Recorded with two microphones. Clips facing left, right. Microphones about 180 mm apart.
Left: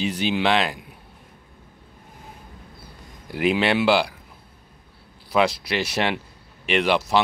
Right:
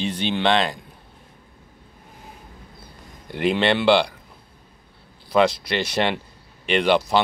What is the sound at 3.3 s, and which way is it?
Speech, 5° left (ahead or behind).